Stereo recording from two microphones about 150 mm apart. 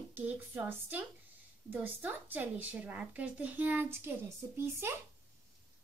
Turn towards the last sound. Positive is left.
turn(degrees=-15)  # may be behind; listen again after turning